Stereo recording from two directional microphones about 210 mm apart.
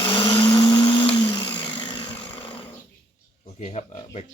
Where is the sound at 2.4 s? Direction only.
25° left (ahead or behind).